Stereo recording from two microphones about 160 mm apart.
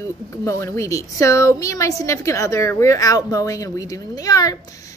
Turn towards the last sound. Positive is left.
turn(degrees=20)  # may be behind; listen again after turning